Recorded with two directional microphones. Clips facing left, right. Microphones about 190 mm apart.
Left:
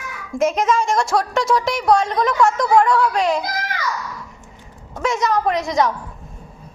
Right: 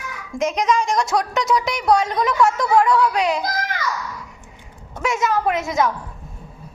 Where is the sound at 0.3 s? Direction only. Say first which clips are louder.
Left 2 dB; 5° left (ahead or behind).